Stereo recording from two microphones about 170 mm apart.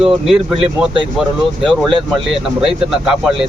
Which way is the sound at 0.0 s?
Centre (ahead or behind).